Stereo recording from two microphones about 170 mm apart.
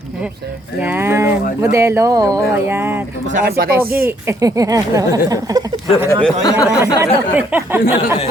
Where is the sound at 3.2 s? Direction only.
50° right (ahead or behind).